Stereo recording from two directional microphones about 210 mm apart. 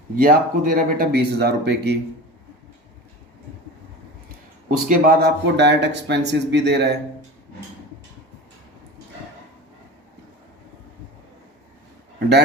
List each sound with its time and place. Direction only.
0.2 s speech: 40° right (ahead or behind)
4.9 s speech: 45° right (ahead or behind)